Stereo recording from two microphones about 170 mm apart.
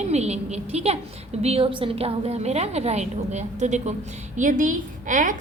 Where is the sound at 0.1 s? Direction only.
40° right (ahead or behind).